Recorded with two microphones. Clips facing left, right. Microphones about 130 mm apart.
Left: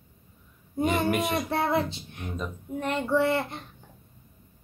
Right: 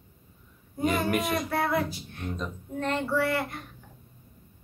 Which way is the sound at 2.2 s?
5° left (ahead or behind).